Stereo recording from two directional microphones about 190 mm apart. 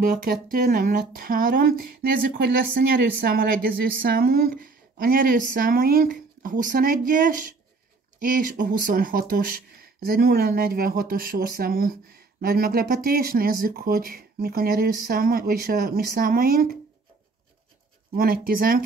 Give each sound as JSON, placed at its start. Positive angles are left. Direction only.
{"t": 0.0, "sound": "speech", "side_deg": -50}
{"t": 18.1, "sound": "speech", "side_deg": -50}